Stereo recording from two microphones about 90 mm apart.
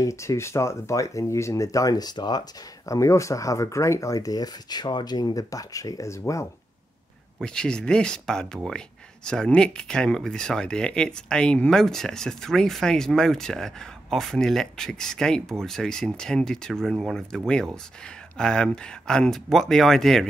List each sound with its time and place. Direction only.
0.0 s speech: 35° left (ahead or behind); by 2.4 s 50° left (ahead or behind)
2.9 s speech: 35° left (ahead or behind)
7.3 s speech: 10° left (ahead or behind)
18.4 s speech: 10° left (ahead or behind)